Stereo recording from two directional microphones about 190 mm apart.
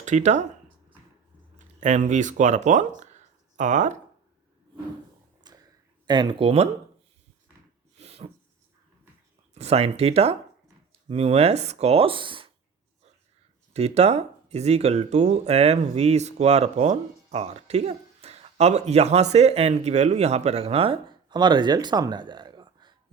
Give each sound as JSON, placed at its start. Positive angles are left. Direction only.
{"t": 0.0, "sound": "speech", "side_deg": -40}
{"t": 1.5, "sound": "speech", "side_deg": -40}
{"t": 5.5, "sound": "a sound", "side_deg": -20}
{"t": 6.1, "sound": "speech", "side_deg": -25}
{"t": 7.9, "sound": "a sound", "side_deg": -30}
{"t": 9.6, "sound": "speech", "side_deg": -35}
{"t": 13.7, "sound": "speech", "side_deg": -35}